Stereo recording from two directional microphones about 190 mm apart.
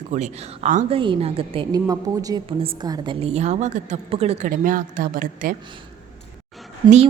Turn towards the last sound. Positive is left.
turn(degrees=-35)  # may be behind; listen again after turning